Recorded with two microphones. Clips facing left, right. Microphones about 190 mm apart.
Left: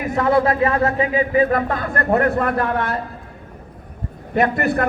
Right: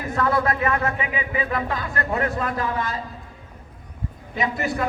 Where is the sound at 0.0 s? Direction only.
25° left (ahead or behind); by 3.0 s 60° left (ahead or behind).